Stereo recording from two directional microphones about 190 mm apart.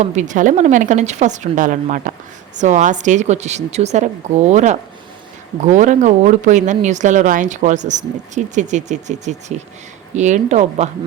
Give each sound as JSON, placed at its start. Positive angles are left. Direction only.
{"t": 0.0, "sound": "speech", "side_deg": -40}